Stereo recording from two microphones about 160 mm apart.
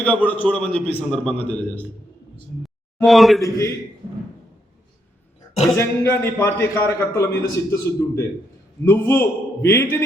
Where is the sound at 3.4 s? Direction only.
20° left (ahead or behind).